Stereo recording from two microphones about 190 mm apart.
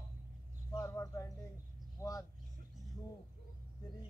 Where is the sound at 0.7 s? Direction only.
15° left (ahead or behind).